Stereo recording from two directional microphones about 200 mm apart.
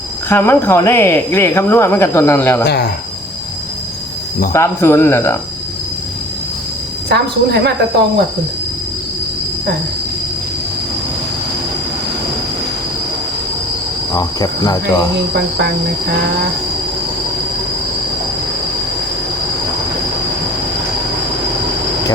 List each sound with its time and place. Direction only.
0.3 s speech: 10° left (ahead or behind)
2.6 s speech: 55° left (ahead or behind)
4.5 s speech: 15° left (ahead or behind)
7.1 s a woman's voice: 55° right (ahead or behind)
14.1 s cricket: 20° left (ahead or behind)